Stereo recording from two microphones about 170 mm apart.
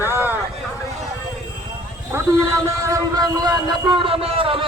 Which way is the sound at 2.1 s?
15° right (ahead or behind).